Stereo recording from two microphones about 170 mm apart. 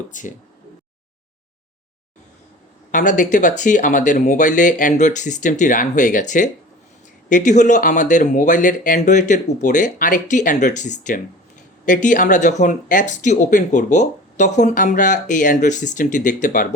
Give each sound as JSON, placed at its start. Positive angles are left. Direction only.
{"t": 0.1, "sound": "speech", "side_deg": 50}
{"t": 2.9, "sound": "speech", "side_deg": 50}